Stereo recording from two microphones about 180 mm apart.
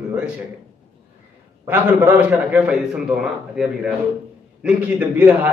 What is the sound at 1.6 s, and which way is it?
A man's voice, 10° right (ahead or behind).